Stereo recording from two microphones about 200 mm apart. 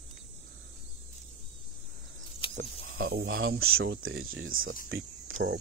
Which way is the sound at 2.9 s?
45° right (ahead or behind).